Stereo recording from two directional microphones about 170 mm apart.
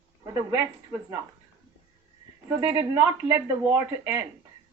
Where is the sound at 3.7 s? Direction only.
15° right (ahead or behind).